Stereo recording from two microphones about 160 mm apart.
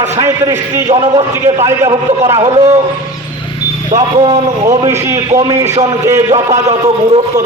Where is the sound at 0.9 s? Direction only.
30° right (ahead or behind).